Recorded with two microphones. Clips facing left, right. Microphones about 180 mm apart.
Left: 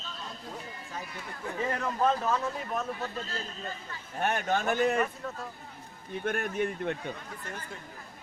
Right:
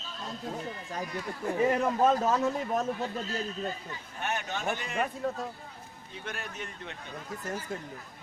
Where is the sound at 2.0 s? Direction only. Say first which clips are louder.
Even; 40° right (ahead or behind).